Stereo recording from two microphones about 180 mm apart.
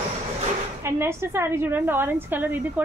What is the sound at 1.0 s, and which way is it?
A woman's voice, 15° right (ahead or behind).